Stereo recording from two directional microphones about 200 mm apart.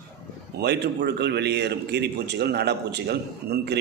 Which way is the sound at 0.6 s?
55° right (ahead or behind).